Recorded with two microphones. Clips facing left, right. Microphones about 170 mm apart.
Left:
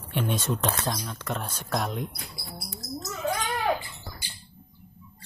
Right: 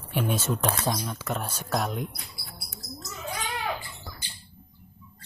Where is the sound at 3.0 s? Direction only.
40° left (ahead or behind).